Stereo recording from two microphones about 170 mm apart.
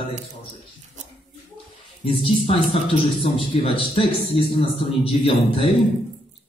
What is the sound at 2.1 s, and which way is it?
Speech, 35° left (ahead or behind).